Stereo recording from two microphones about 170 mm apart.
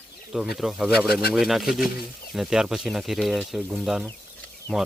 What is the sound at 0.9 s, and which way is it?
Speech, 65° left (ahead or behind).